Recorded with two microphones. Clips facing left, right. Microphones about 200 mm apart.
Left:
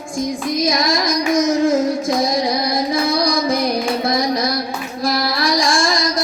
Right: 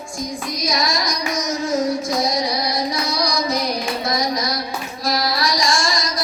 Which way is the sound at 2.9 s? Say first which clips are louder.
Left 5 dB; 55° left (ahead or behind).